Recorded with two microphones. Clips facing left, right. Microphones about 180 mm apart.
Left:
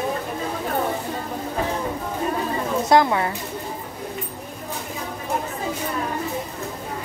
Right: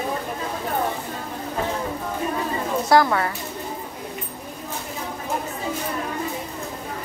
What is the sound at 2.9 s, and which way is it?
Speech, 20° left (ahead or behind).